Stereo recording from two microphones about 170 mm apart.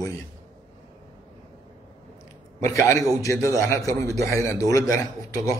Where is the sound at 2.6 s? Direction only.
20° left (ahead or behind).